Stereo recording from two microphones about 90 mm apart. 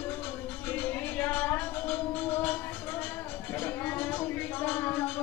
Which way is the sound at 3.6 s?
15° left (ahead or behind).